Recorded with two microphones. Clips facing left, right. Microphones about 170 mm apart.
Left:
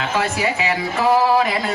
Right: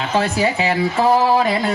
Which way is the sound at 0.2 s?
30° right (ahead or behind).